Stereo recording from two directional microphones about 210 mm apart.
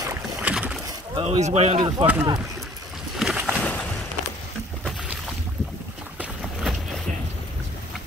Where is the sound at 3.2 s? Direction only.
5° right (ahead or behind).